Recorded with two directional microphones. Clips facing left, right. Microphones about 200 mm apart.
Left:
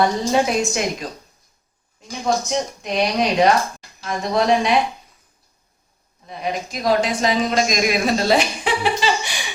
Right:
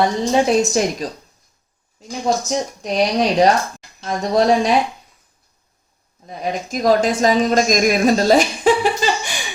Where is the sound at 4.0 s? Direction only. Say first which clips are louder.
Right 3 dB; 40° right (ahead or behind).